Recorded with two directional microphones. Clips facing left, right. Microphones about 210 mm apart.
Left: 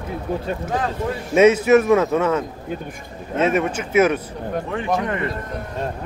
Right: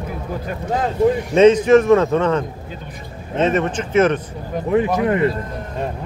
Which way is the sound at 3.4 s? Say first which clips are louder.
Right 1 dB; 10° left (ahead or behind).